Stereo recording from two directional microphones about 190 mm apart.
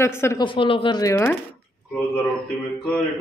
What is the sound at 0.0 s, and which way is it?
Speech, 15° left (ahead or behind).